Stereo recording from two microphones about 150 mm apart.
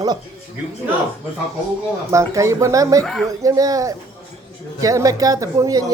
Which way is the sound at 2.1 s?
20° right (ahead or behind).